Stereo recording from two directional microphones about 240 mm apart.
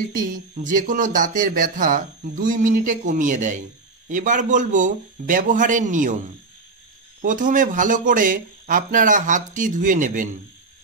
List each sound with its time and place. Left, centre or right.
0.2 s speech: right
7.2 s speech: right